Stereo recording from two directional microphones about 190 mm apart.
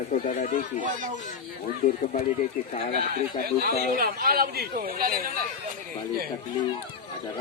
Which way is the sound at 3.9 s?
50° right (ahead or behind).